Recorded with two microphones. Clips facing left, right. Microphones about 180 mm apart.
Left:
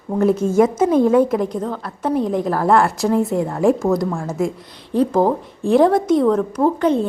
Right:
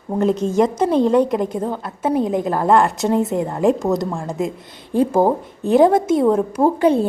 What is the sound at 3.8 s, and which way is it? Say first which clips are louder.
Speech: left 1 dB; 20° right (ahead or behind).